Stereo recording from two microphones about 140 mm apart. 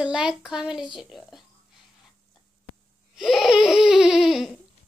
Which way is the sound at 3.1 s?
Centre (ahead or behind).